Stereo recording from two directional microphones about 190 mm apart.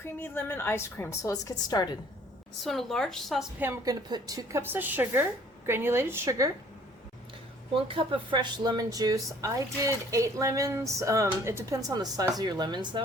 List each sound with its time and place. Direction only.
0.0 s a woman's voice: 10° left (ahead or behind)
2.6 s speech: centre (ahead or behind)
3.6 s speech: 15° right (ahead or behind)
7.9 s speech: 25° right (ahead or behind)